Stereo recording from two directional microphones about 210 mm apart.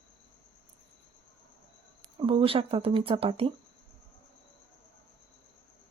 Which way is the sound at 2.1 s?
25° right (ahead or behind).